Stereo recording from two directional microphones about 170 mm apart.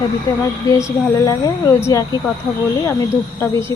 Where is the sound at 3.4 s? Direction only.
15° left (ahead or behind).